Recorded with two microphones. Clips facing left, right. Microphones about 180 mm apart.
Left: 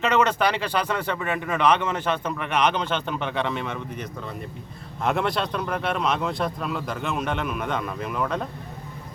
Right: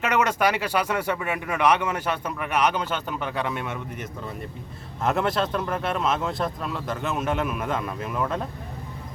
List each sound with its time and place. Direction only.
0.0 s speech: 10° right (ahead or behind)
5.0 s speech: centre (ahead or behind)